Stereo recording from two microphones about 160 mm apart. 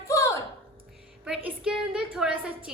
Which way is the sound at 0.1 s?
20° left (ahead or behind).